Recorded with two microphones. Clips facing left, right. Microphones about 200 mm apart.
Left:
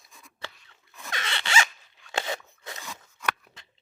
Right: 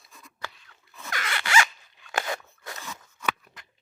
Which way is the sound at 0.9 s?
20° left (ahead or behind).